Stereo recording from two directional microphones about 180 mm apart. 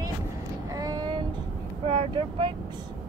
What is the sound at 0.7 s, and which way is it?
Vehicle, 20° right (ahead or behind).